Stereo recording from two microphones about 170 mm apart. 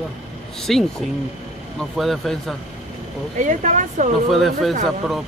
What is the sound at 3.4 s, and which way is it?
Speech, 45° right (ahead or behind).